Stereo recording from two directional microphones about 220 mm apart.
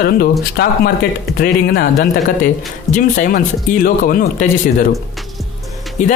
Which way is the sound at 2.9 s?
40° left (ahead or behind).